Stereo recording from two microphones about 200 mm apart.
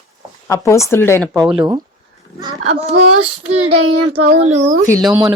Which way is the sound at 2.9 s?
75° right (ahead or behind).